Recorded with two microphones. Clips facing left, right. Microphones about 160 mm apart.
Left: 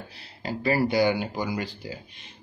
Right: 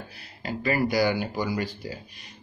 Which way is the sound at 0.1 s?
30° left (ahead or behind).